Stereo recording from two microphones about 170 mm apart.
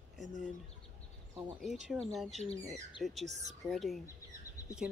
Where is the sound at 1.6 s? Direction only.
5° right (ahead or behind).